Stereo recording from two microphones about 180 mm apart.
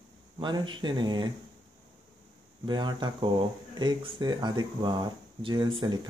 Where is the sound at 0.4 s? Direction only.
25° right (ahead or behind).